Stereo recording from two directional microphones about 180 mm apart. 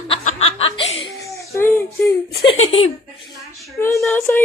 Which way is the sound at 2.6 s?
30° left (ahead or behind).